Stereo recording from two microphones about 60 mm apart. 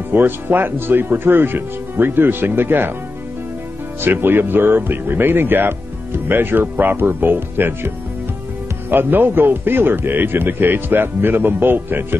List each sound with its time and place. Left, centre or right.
0.1 s speech: right
4.0 s speech: right
8.9 s speech: right